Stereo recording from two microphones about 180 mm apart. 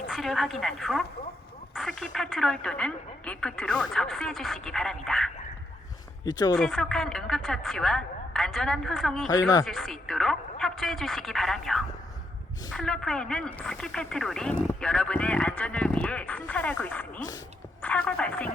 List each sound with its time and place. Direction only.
0.1 s speech: centre (ahead or behind)
1.7 s a sound: centre (ahead or behind)
2.1 s speech: centre (ahead or behind)
6.2 s speech: 20° left (ahead or behind)
6.6 s speech: centre (ahead or behind)
9.3 s speech: 20° left (ahead or behind)
9.6 s speech: centre (ahead or behind)